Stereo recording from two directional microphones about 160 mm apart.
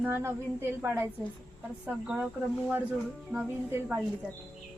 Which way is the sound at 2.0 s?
5° right (ahead or behind).